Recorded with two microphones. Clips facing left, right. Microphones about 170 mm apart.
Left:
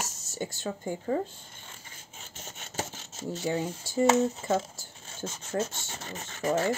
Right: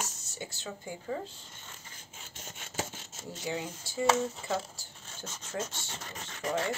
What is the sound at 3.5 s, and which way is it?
Speech, 45° left (ahead or behind).